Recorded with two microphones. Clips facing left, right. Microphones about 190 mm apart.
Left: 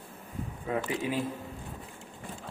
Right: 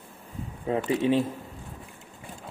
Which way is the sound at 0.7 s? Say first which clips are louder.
Right 4 dB; 30° right (ahead or behind).